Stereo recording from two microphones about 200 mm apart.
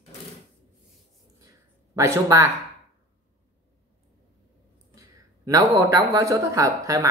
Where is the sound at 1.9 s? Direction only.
15° right (ahead or behind).